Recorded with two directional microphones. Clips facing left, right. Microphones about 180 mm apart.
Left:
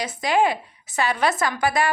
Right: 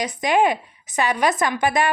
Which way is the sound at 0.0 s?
20° right (ahead or behind).